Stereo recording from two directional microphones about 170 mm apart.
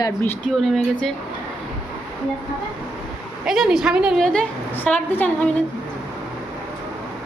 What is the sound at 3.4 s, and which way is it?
A woman's voice, centre (ahead or behind).